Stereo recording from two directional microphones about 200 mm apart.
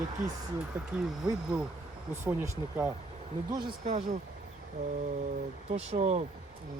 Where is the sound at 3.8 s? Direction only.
35° right (ahead or behind).